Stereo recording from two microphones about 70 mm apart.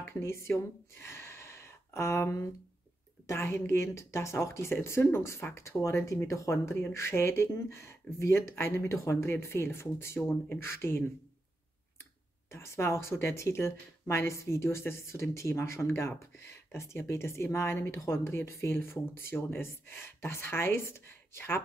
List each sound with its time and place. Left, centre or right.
0.1 s speech: left
12.4 s speech: left